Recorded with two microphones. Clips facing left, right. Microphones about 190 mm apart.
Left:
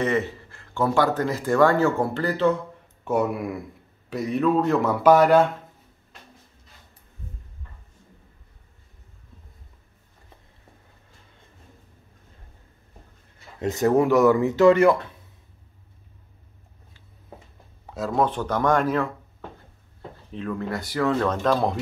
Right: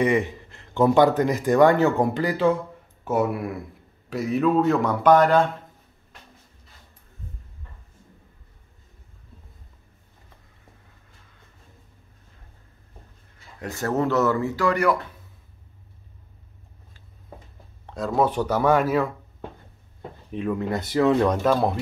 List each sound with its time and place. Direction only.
0.0 s speech: 15° right (ahead or behind); by 5.5 s 5° left (ahead or behind)
13.6 s speech: 20° left (ahead or behind)
17.8 s speech: 5° left (ahead or behind)
18.2 s speech: 10° right (ahead or behind)
20.2 s speech: 15° right (ahead or behind)